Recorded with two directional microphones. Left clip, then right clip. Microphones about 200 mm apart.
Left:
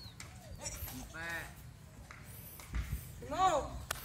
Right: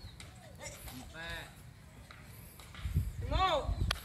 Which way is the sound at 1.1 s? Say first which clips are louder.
Left 2 dB; 45° right (ahead or behind).